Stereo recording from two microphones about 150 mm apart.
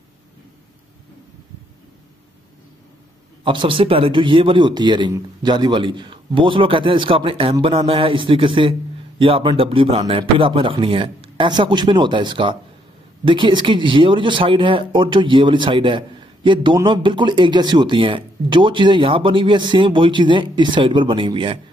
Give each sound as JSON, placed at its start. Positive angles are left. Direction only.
{"t": 3.4, "sound": "speech", "side_deg": -35}